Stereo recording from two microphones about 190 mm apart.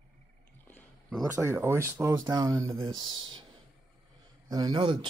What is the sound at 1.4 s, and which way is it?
Speech, 10° right (ahead or behind).